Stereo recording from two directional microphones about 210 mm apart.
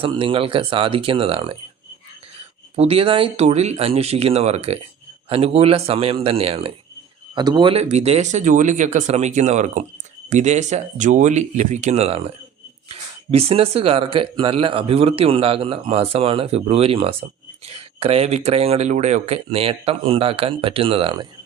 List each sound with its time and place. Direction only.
0.0 s speech: 25° right (ahead or behind)
2.7 s speech: 30° right (ahead or behind)